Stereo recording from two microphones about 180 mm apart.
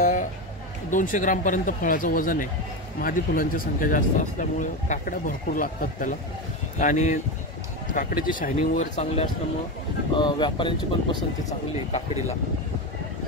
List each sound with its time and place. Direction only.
0.0 s a sound: 45° left (ahead or behind)
0.8 s speech: 45° left (ahead or behind)
8.7 s speech: 35° left (ahead or behind)